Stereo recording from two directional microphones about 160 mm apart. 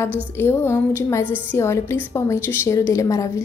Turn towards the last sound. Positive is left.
turn(degrees=20)  # may be behind; listen again after turning